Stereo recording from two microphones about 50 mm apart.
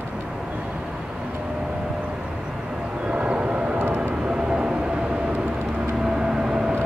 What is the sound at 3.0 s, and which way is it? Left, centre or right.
Vehicle, right.